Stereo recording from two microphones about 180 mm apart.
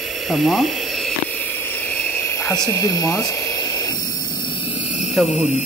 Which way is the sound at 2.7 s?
15° left (ahead or behind).